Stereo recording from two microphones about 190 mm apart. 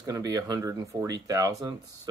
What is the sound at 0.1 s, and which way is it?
Speech, 20° right (ahead or behind).